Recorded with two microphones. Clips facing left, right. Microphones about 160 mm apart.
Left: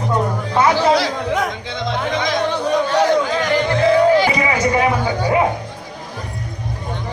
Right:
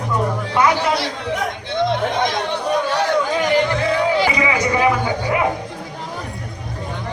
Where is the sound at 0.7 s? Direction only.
90° left.